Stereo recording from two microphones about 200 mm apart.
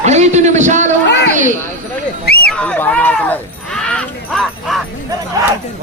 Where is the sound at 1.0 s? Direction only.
60° left (ahead or behind).